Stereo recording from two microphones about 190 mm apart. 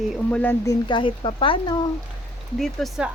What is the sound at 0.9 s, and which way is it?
Speech, 25° left (ahead or behind).